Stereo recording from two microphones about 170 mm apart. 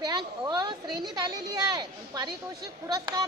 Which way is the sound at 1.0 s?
25° right (ahead or behind).